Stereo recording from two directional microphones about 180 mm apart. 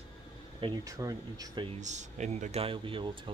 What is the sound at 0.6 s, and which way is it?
Speech, 20° right (ahead or behind).